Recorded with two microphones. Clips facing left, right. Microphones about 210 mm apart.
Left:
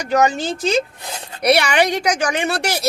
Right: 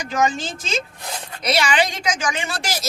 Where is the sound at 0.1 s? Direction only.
65° left (ahead or behind).